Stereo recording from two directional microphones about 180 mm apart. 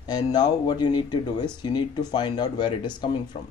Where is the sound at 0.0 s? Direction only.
25° left (ahead or behind).